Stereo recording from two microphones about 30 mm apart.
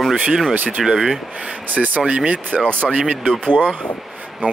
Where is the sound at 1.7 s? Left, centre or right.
Right.